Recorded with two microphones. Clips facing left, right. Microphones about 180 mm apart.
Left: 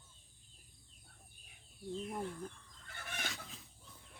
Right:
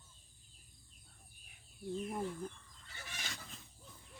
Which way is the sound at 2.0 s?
5° right (ahead or behind).